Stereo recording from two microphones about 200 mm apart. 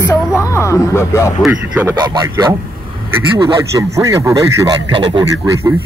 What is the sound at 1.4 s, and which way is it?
Speech, 5° right (ahead or behind).